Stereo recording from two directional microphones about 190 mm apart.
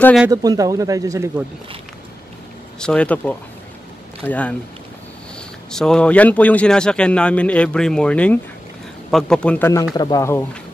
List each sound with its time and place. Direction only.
0.3 s speech: 20° right (ahead or behind)
2.8 s a man's voice: 5° left (ahead or behind)
5.7 s a man's voice: 5° left (ahead or behind)